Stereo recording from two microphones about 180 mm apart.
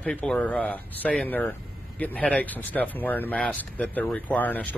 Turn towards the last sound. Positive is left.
turn(degrees=10)  # may be behind; listen again after turning